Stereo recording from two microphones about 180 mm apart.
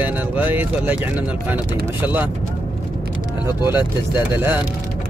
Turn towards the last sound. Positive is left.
turn(degrees=-10)  # may be behind; listen again after turning